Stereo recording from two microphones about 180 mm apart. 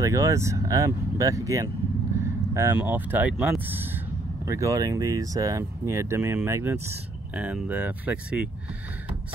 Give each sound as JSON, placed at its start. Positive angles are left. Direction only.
{"t": 0.0, "sound": "speech", "side_deg": -15}